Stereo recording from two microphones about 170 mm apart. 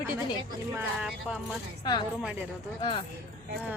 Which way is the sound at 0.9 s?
5° right (ahead or behind).